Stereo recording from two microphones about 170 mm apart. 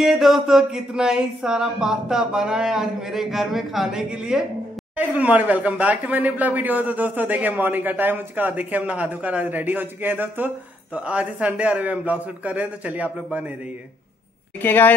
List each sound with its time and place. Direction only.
0.0 s speech: centre (ahead or behind)
14.6 s a woman's voice: 10° left (ahead or behind)